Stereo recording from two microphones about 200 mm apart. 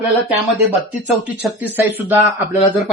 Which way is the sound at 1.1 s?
10° right (ahead or behind).